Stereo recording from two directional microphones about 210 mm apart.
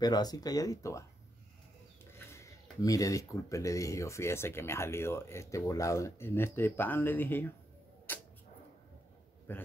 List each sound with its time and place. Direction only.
0.0 s speech: 20° left (ahead or behind)
2.1 s speech: 15° left (ahead or behind)
8.1 s a sound: 10° left (ahead or behind)
9.5 s speech: 10° left (ahead or behind)